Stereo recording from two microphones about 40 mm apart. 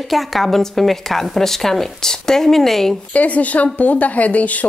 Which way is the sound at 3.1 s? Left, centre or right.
Left.